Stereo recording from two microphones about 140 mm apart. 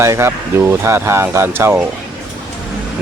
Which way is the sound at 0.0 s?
20° right (ahead or behind).